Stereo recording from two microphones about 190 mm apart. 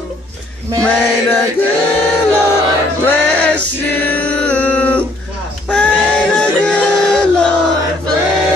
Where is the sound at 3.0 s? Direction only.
10° left (ahead or behind).